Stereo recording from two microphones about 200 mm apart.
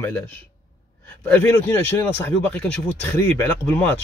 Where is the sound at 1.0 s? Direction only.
10° left (ahead or behind).